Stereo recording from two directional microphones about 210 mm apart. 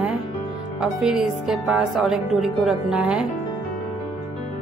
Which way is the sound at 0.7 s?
5° right (ahead or behind).